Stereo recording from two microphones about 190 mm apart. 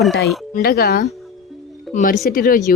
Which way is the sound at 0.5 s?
55° left (ahead or behind).